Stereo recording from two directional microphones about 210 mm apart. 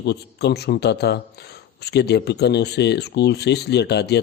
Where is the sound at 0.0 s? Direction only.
50° left (ahead or behind).